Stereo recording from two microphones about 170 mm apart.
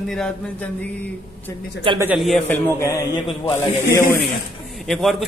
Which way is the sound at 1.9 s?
30° right (ahead or behind).